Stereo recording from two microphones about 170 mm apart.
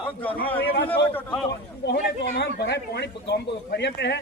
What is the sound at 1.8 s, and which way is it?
Speech, 80° left.